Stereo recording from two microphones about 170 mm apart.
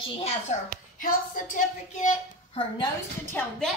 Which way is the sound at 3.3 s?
10° left (ahead or behind).